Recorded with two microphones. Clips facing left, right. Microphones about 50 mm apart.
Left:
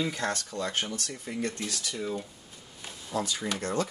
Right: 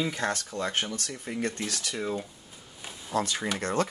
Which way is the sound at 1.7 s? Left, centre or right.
Right.